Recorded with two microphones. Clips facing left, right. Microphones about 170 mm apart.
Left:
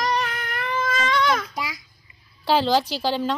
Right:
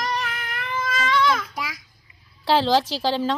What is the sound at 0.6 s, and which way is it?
Baby cry, 30° left (ahead or behind).